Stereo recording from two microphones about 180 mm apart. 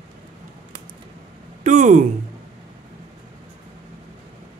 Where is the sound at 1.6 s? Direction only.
45° right (ahead or behind).